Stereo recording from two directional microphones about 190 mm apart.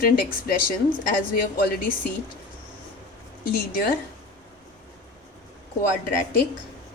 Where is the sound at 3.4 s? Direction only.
50° left (ahead or behind).